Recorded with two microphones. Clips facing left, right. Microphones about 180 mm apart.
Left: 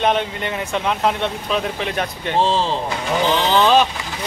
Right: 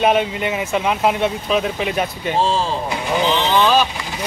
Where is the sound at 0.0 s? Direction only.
5° right (ahead or behind).